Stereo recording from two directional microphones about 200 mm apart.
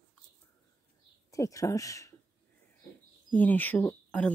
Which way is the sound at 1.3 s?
15° left (ahead or behind).